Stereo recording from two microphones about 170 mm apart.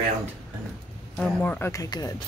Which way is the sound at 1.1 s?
10° left (ahead or behind).